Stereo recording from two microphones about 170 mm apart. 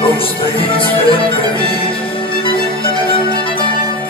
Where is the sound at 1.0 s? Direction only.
30° left (ahead or behind).